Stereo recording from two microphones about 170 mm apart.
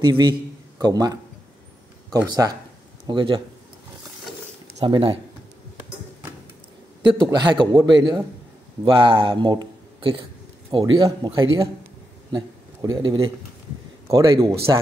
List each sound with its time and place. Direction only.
0.0 s a man's voice: 25° right (ahead or behind)
3.1 s a man's voice: 30° right (ahead or behind)
4.7 s speech: 30° right (ahead or behind)
7.0 s a man's voice: 25° right (ahead or behind)